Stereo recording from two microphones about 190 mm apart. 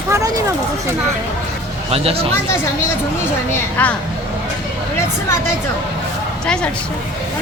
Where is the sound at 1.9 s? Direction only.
30° right (ahead or behind).